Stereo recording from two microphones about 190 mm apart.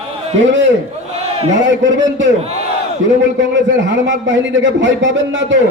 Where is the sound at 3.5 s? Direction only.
70° right (ahead or behind).